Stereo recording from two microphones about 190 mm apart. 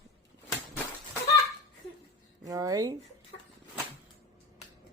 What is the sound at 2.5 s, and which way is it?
Speech, 20° right (ahead or behind).